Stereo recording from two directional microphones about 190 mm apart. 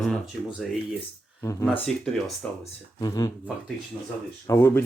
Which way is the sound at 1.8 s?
5° left (ahead or behind).